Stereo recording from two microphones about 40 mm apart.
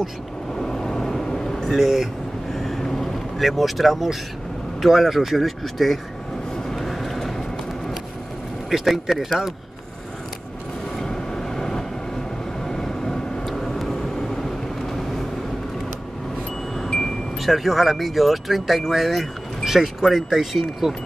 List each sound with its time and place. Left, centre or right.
0.6 s vehicle: centre
1.7 s speech: centre
2.5 s vehicle: centre
4.8 s speech: centre
6.7 s vehicle: centre
8.6 s speech: centre
11.0 s vehicle: centre
13.5 s vehicle: centre
17.4 s speech: centre